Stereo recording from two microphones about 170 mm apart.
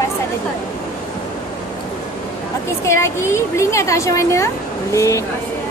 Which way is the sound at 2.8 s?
15° left (ahead or behind).